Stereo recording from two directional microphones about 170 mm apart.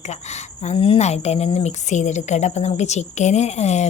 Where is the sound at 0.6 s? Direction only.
35° left (ahead or behind).